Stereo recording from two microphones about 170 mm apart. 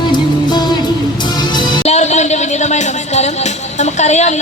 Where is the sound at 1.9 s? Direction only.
40° left (ahead or behind).